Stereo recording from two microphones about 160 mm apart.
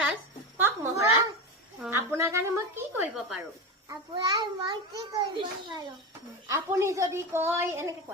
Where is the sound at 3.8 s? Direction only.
25° right (ahead or behind).